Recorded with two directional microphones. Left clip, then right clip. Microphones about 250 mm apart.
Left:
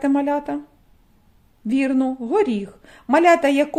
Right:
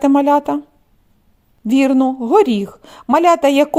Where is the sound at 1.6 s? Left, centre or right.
Right.